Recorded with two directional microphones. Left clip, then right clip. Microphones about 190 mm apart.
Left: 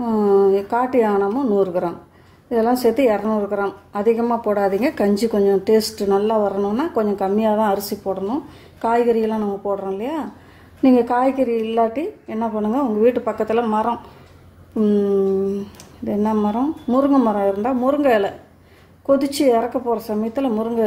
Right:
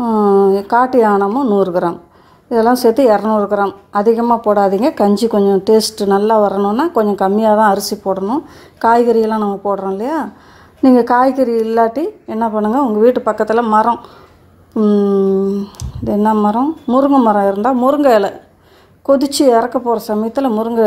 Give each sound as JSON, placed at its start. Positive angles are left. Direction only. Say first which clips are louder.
{"t": 0.0, "sound": "a woman's voice", "louder": "right 5 dB", "side_deg": -25}